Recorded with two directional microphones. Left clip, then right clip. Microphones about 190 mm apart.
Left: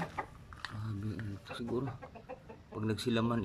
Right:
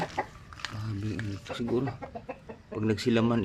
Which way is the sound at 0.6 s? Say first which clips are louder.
Right 6 dB; 5° right (ahead or behind).